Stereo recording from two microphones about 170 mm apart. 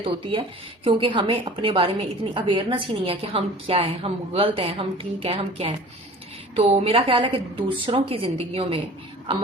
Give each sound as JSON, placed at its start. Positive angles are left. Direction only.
{"t": 0.0, "sound": "a woman's voice", "side_deg": -30}